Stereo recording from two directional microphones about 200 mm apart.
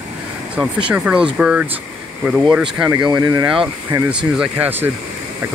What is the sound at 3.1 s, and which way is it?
Speech, 20° right (ahead or behind).